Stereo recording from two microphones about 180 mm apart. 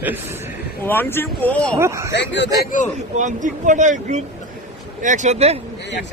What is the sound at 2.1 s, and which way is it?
Speech, 75° left (ahead or behind).